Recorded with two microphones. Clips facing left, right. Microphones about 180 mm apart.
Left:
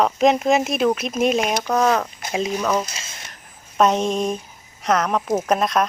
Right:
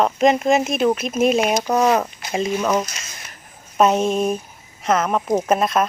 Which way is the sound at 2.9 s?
30° left (ahead or behind).